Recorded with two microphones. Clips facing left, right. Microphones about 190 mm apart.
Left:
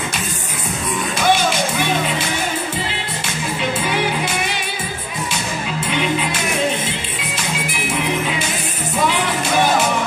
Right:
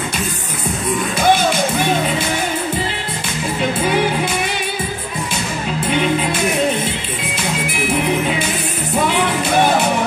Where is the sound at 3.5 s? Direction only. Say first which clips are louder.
Right 4 dB; 50° right (ahead or behind).